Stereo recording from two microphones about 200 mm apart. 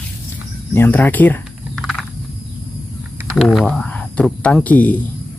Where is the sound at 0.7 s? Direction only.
10° left (ahead or behind).